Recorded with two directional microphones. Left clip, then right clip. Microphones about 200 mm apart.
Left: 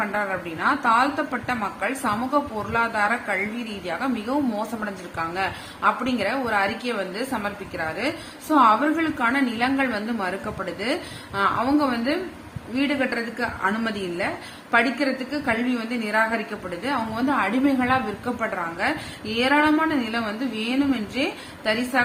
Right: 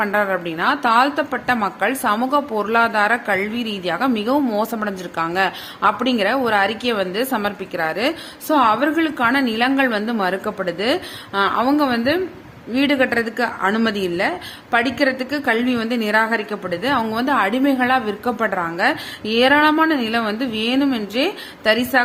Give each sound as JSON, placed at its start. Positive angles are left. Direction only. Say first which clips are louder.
{"t": 0.0, "sound": "a woman's voice", "louder": "right 6 dB", "side_deg": -45}